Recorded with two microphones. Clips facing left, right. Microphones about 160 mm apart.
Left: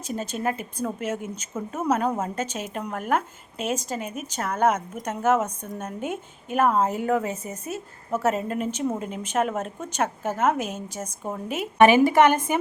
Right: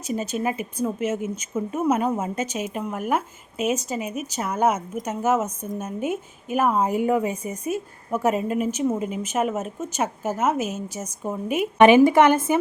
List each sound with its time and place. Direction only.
0.1 s a woman's voice: 10° right (ahead or behind)
12.1 s speech: 10° left (ahead or behind)